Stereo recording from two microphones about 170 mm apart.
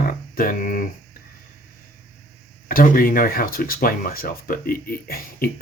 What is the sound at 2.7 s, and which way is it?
Speech, 55° left (ahead or behind).